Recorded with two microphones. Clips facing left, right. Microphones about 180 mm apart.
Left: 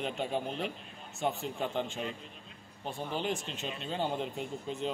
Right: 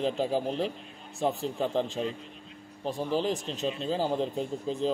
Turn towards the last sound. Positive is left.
turn(degrees=-35)  # may be behind; listen again after turning